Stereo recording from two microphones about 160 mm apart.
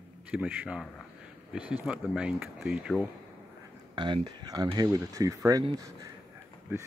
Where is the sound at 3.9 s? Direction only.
30° right (ahead or behind).